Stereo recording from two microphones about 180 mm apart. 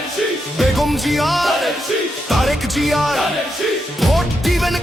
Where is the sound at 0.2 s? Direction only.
Centre (ahead or behind).